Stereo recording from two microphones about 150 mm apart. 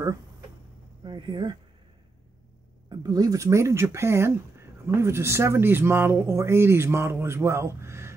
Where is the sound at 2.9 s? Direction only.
25° right (ahead or behind).